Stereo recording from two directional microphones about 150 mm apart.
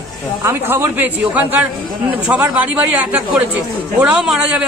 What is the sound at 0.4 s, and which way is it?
A woman's voice, 15° right (ahead or behind).